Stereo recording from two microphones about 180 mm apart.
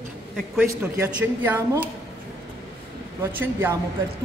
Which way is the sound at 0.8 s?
10° right (ahead or behind).